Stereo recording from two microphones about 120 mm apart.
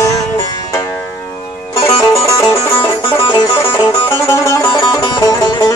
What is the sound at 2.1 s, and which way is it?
Music, 25° left (ahead or behind).